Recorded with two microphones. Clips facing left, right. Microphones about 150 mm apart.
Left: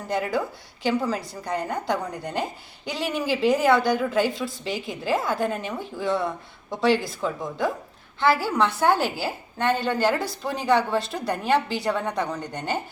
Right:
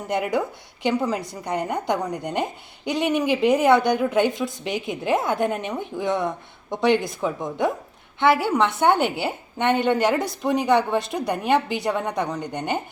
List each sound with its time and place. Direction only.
0.1 s a woman's voice: 20° right (ahead or behind)